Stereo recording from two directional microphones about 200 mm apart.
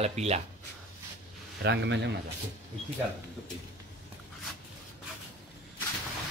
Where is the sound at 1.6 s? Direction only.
60° right (ahead or behind).